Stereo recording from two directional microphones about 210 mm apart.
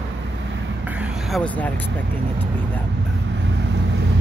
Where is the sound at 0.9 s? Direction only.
5° right (ahead or behind).